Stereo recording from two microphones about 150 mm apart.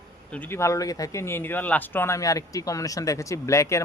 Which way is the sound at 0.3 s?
10° left (ahead or behind).